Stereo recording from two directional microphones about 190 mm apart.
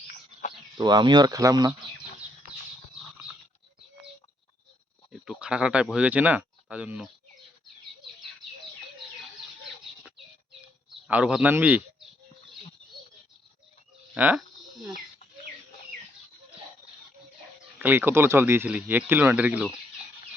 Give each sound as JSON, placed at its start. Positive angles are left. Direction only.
{"t": 0.8, "sound": "speech", "side_deg": -20}
{"t": 5.1, "sound": "speech", "side_deg": 0}
{"t": 11.1, "sound": "speech", "side_deg": -5}
{"t": 14.1, "sound": "speech", "side_deg": -5}
{"t": 17.7, "sound": "speech", "side_deg": -10}